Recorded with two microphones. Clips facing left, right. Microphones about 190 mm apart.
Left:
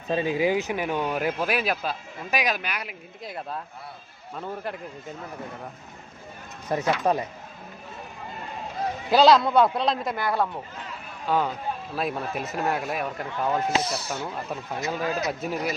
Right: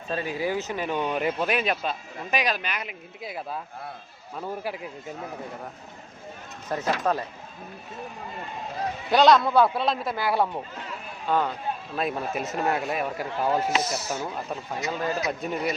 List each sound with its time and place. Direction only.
0.1 s speech: 15° left (ahead or behind); by 4.8 s 5° right (ahead or behind)
6.7 s speech: 15° left (ahead or behind)
9.0 s speech: 5° left (ahead or behind)
9.4 s a man's voice: 20° left (ahead or behind)
9.6 s speech: centre (ahead or behind)
11.3 s speech: 5° left (ahead or behind)
14.7 s speech: 5° left (ahead or behind)